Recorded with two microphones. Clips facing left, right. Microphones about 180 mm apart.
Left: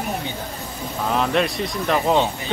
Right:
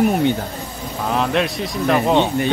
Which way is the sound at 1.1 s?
Centre (ahead or behind).